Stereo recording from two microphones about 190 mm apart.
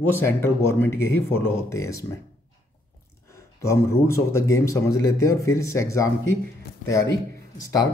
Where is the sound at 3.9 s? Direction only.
15° left (ahead or behind).